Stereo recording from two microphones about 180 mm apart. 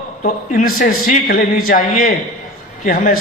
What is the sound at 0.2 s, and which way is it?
A man's voice, 50° left (ahead or behind).